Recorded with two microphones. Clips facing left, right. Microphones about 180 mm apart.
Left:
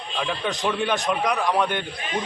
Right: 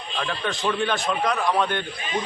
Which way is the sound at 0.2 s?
15° left (ahead or behind).